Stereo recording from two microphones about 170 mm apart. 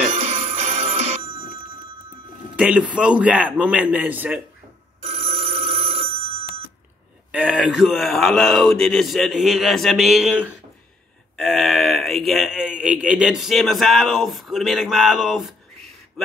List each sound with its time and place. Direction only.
0.5 s music: 40° right (ahead or behind)
2.5 s a man's voice: 5° right (ahead or behind)
5.0 s telephone bell ringing: 40° right (ahead or behind)
7.2 s a man's voice: 5° right (ahead or behind)